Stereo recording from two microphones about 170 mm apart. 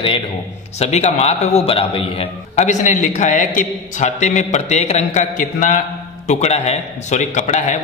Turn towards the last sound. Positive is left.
turn(degrees=45)  # may be behind; listen again after turning